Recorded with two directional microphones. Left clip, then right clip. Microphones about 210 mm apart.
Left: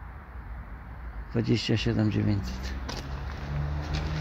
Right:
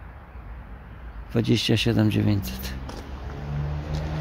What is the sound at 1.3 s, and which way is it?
Speech, 20° right (ahead or behind).